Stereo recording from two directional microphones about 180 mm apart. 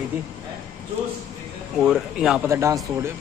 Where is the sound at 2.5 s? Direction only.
15° right (ahead or behind).